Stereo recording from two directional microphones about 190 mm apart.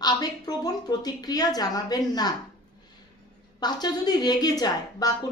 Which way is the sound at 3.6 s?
20° left (ahead or behind).